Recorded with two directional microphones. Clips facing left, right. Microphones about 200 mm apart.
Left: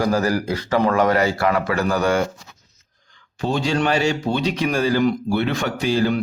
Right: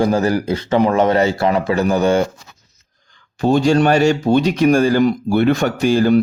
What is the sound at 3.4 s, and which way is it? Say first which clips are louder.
Speech: right 7 dB; 50° right (ahead or behind).